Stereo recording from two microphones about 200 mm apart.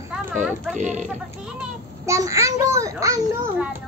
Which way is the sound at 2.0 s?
15° right (ahead or behind).